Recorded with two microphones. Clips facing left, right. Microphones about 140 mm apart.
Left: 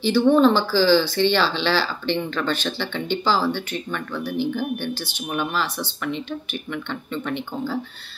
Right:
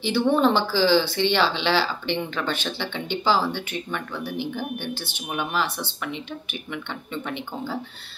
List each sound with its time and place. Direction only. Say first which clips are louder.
0.0 s speech: left 4 dB; 20° right (ahead or behind)